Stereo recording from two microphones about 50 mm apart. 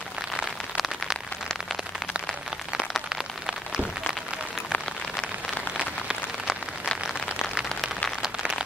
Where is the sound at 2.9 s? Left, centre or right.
Centre.